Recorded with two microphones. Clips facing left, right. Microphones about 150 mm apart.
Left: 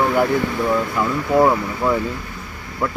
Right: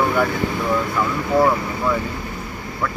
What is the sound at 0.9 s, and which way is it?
Speech, 20° left (ahead or behind).